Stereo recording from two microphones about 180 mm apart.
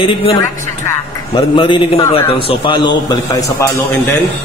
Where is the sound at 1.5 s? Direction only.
25° left (ahead or behind).